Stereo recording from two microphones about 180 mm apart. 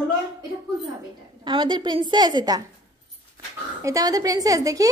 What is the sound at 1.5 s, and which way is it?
A woman's voice, 25° right (ahead or behind).